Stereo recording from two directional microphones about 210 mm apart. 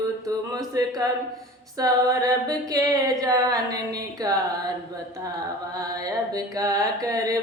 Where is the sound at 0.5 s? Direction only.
15° right (ahead or behind).